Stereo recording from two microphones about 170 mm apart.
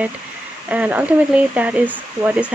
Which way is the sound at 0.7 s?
10° right (ahead or behind).